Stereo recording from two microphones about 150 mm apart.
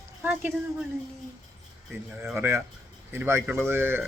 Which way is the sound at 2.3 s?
15° right (ahead or behind).